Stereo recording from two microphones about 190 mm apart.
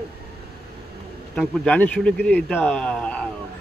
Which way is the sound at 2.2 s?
50° right (ahead or behind).